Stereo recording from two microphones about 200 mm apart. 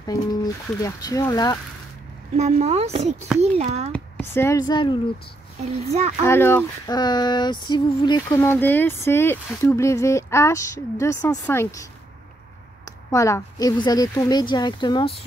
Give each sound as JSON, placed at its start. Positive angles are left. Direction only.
{"t": 0.0, "sound": "female singing", "side_deg": 20}
{"t": 2.3, "sound": "speech", "side_deg": -35}
{"t": 3.9, "sound": "speech", "side_deg": 10}
{"t": 5.9, "sound": "speech", "side_deg": -35}
{"t": 6.2, "sound": "female singing", "side_deg": 10}
{"t": 8.4, "sound": "speech", "side_deg": 10}
{"t": 13.1, "sound": "female singing", "side_deg": 15}